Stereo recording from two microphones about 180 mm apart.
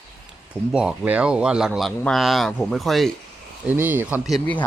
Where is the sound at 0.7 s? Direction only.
5° right (ahead or behind).